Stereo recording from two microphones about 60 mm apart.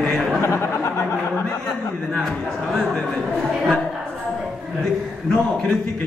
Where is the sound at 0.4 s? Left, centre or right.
Left.